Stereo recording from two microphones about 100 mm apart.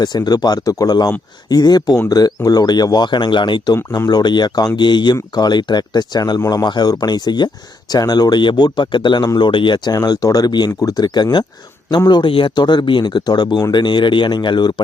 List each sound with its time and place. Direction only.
0.0 s speech: 40° left (ahead or behind)
3.9 s speech: 40° left (ahead or behind)
9.2 s speech: 40° left (ahead or behind)
9.5 s speech: 50° left (ahead or behind)